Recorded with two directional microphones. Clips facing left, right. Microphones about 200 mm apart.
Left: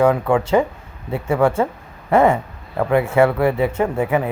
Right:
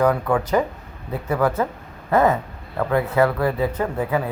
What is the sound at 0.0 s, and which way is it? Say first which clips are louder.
Speech: left 3 dB; 25° left (ahead or behind).